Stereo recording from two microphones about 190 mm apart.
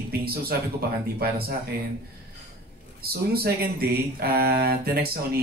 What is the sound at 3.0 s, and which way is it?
Speech, 55° right (ahead or behind).